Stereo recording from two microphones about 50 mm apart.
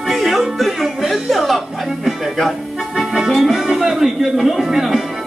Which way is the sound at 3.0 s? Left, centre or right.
Centre.